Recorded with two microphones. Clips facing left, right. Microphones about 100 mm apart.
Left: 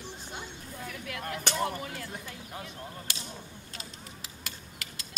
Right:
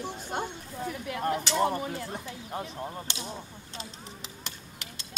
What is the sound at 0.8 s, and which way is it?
Speech, 25° right (ahead or behind).